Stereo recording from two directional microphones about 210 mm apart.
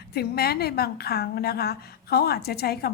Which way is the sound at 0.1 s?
50° left (ahead or behind).